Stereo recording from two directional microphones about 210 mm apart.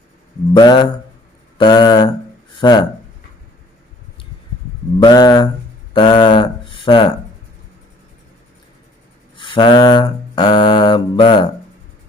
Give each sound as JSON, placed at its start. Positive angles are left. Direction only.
{"t": 0.6, "sound": "mantra", "side_deg": 20}
{"t": 5.0, "sound": "mantra", "side_deg": 20}
{"t": 5.9, "sound": "speech", "side_deg": 20}
{"t": 9.4, "sound": "mantra", "side_deg": 25}